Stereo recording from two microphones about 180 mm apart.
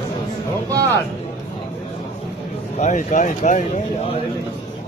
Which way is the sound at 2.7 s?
40° left (ahead or behind).